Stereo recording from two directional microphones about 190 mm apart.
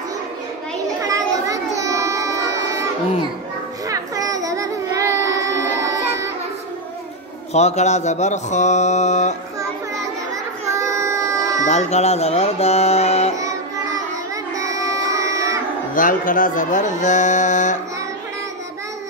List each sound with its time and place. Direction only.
1.0 s child singing: 15° right (ahead or behind)
7.5 s speech: 35° left (ahead or behind)
10.7 s child singing: 15° right (ahead or behind)
11.6 s speech: 35° left (ahead or behind)
13.4 s music: 15° right (ahead or behind)
14.6 s child singing: 15° right (ahead or behind)
15.9 s speech: 45° left (ahead or behind)